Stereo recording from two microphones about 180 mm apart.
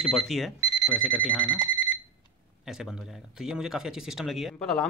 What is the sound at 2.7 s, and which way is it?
Speech, centre (ahead or behind).